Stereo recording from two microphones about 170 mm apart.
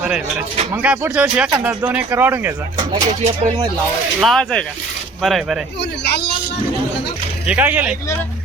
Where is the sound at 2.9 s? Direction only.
40° right (ahead or behind).